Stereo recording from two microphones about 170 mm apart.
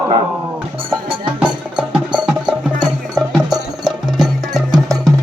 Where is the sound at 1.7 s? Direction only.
5° right (ahead or behind).